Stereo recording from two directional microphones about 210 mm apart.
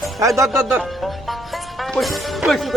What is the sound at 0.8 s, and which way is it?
Music, centre (ahead or behind).